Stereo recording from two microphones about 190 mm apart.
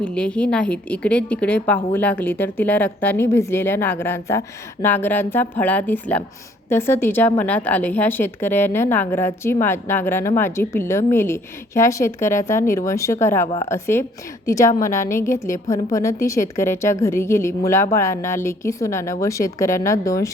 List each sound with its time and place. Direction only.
0.0 s a woman's voice: 5° left (ahead or behind)